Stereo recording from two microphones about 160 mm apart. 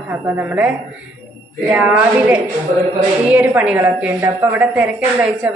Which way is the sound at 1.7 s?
10° right (ahead or behind).